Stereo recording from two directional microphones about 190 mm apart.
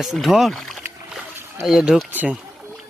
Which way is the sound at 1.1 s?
5° right (ahead or behind).